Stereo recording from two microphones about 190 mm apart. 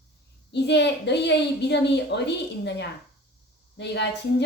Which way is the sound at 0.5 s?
65° left (ahead or behind).